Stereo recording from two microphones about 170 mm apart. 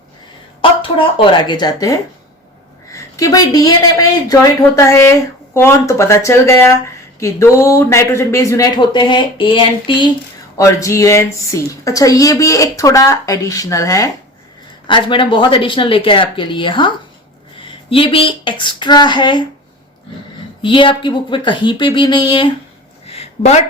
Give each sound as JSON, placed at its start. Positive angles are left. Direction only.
{"t": 0.6, "sound": "a woman's voice", "side_deg": 30}
{"t": 10.6, "sound": "a woman's voice", "side_deg": 20}
{"t": 20.6, "sound": "a woman's voice", "side_deg": 30}
{"t": 23.0, "sound": "a sound", "side_deg": 35}